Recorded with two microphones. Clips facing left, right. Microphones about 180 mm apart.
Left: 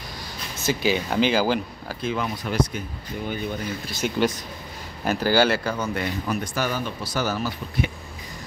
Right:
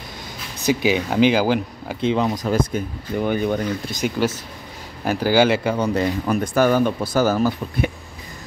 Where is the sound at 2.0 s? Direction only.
25° right (ahead or behind).